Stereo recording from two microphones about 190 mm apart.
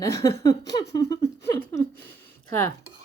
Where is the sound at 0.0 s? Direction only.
15° left (ahead or behind).